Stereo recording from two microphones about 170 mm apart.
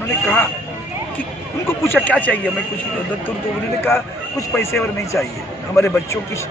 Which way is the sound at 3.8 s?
15° left (ahead or behind).